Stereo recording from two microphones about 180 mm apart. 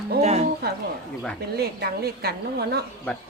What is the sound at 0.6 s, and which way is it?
A woman's voice, 60° right (ahead or behind).